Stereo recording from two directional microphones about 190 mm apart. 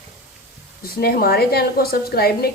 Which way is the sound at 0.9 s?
55° left (ahead or behind).